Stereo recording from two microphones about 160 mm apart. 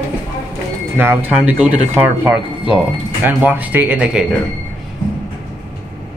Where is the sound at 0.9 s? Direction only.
10° right (ahead or behind).